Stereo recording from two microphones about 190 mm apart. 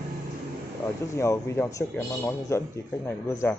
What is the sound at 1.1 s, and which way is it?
Speech, 15° left (ahead or behind).